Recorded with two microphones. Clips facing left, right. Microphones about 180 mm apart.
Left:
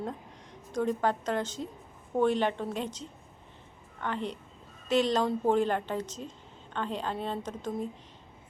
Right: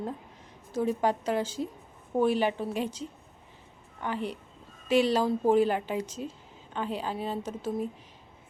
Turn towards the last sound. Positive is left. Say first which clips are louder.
# right 2 dB
turn(degrees=-10)  # may be behind; listen again after turning